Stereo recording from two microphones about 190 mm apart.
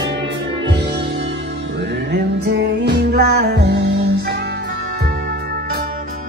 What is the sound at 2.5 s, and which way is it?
Music, 65° right (ahead or behind).